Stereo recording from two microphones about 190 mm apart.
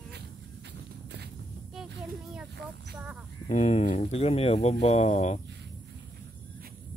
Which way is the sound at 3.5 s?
40° left (ahead or behind).